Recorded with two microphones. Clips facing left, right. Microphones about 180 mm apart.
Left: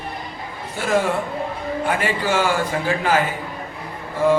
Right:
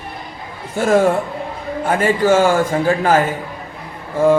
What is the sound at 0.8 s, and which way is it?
A man's voice, 50° right (ahead or behind).